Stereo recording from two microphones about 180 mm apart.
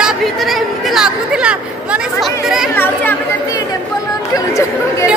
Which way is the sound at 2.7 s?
10° left (ahead or behind).